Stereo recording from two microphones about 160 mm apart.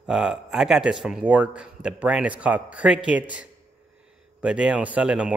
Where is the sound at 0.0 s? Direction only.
5° right (ahead or behind).